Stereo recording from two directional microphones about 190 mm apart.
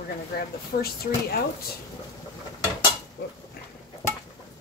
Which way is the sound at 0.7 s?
50° left (ahead or behind).